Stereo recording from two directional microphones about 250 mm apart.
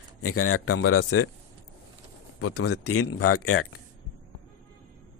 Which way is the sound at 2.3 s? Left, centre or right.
Left.